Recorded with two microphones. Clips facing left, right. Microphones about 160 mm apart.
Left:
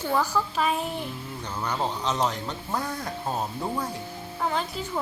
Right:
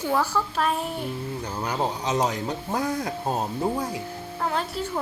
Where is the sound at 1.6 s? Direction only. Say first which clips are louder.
Right 1 dB; 15° right (ahead or behind).